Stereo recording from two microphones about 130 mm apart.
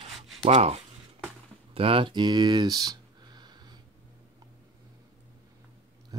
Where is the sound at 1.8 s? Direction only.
45° right (ahead or behind).